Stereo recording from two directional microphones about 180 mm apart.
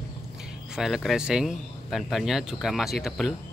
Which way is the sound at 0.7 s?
Centre (ahead or behind).